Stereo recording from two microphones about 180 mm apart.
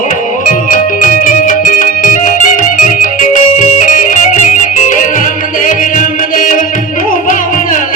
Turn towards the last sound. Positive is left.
turn(degrees=45)  # may be behind; listen again after turning